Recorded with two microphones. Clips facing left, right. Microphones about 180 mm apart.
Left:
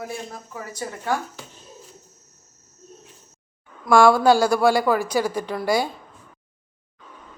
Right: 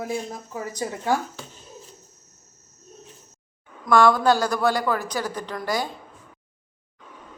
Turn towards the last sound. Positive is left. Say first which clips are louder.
# left 5 dB
turn(degrees=10)  # may be behind; listen again after turning